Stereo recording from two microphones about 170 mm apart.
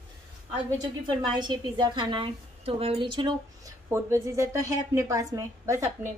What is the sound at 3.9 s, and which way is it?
A woman's voice, 15° right (ahead or behind).